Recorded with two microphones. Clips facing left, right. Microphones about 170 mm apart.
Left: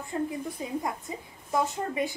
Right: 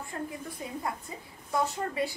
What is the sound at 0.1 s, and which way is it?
Speech, 25° left (ahead or behind).